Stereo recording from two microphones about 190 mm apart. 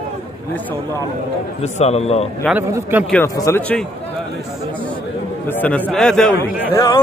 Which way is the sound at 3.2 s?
15° left (ahead or behind).